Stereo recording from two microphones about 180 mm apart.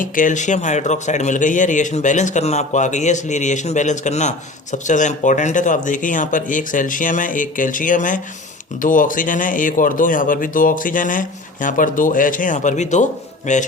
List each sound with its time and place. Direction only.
0.0 s speech: 45° left (ahead or behind)
13.5 s music: 40° left (ahead or behind)